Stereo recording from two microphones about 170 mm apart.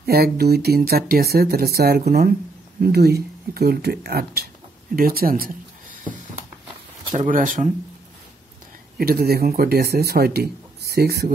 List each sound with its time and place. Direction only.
0.0 s speech: 65° right (ahead or behind)
4.9 s a sound: 60° right (ahead or behind)
7.2 s speech: 50° right (ahead or behind)
8.9 s speech: 60° right (ahead or behind)